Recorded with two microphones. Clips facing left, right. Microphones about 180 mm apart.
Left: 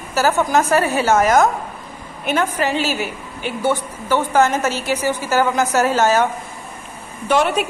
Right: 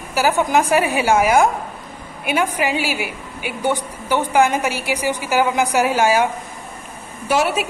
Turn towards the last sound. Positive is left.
turn(degrees=-5)  # may be behind; listen again after turning